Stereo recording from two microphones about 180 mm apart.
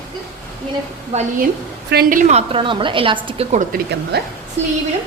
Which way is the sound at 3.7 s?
65° right (ahead or behind).